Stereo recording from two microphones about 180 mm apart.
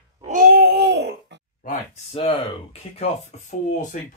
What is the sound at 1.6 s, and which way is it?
Speech, 35° left (ahead or behind).